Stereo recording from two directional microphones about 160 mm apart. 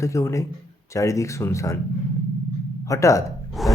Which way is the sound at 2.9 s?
20° left (ahead or behind).